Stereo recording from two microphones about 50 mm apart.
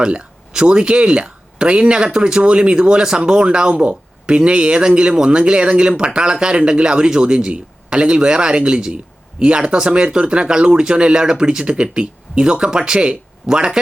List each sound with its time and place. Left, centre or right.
0.0 s speech: centre